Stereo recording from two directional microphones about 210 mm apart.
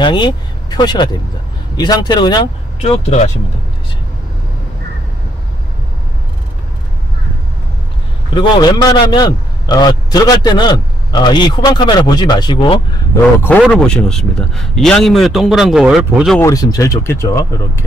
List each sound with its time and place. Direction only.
0.0 s a man's voice: 20° left (ahead or behind)
8.4 s a man's voice: 20° left (ahead or behind)
13.1 s a man's voice: 10° left (ahead or behind)
16.3 s speech: 15° left (ahead or behind)